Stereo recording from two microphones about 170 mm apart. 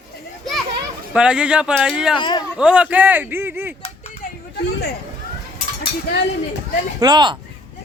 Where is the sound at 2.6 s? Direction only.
5° right (ahead or behind).